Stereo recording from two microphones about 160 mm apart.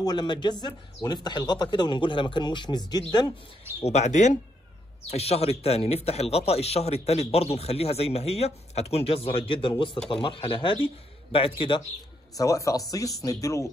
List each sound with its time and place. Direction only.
0.0 s speech: 25° left (ahead or behind)
3.8 s speech: 45° left (ahead or behind)
12.4 s speech: 20° left (ahead or behind)